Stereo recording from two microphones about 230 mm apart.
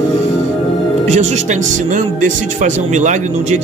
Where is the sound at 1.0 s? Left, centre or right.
Right.